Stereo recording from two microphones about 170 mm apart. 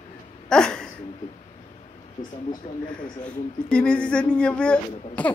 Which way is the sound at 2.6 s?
40° left (ahead or behind).